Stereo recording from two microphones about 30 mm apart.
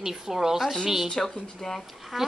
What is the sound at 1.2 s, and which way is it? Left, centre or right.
Speech, centre.